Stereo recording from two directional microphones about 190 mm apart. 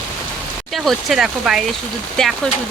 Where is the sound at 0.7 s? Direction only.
Centre (ahead or behind).